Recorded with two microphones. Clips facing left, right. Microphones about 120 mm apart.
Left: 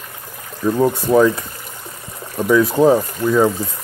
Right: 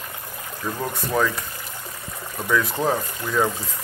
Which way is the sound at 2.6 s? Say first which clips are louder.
Left 13 dB; 30° left (ahead or behind).